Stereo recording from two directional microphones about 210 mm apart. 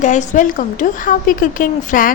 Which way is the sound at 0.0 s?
35° left (ahead or behind).